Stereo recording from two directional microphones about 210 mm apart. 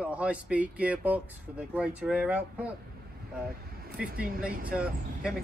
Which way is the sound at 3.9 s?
45° right (ahead or behind).